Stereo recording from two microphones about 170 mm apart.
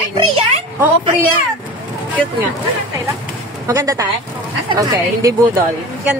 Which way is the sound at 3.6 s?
20° right (ahead or behind).